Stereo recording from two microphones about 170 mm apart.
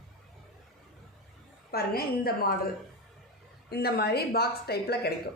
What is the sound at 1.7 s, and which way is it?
Speech, 65° left (ahead or behind).